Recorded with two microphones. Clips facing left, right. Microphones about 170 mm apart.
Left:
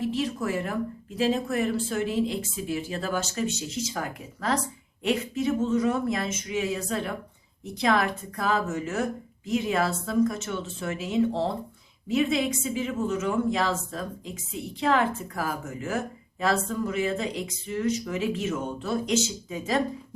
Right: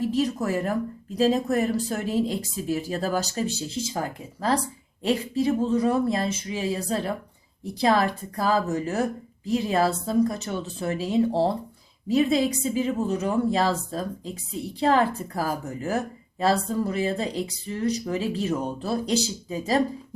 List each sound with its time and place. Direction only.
0.0 s a woman's voice: 40° right (ahead or behind)